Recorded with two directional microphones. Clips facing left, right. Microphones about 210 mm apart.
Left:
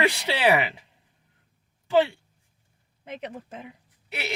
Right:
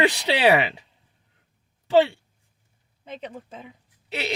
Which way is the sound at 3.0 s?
10° left (ahead or behind).